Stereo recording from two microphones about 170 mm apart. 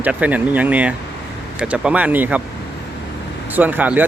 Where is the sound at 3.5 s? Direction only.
10° right (ahead or behind).